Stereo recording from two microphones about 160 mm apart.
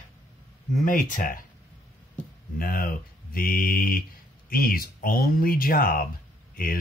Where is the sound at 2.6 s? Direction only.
65° left (ahead or behind).